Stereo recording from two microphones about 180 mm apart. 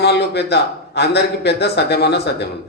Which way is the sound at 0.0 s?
70° left (ahead or behind).